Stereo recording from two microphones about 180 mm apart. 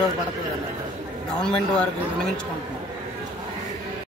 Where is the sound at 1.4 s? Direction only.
5° left (ahead or behind).